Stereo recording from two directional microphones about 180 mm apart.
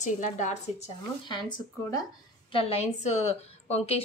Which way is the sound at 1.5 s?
25° left (ahead or behind).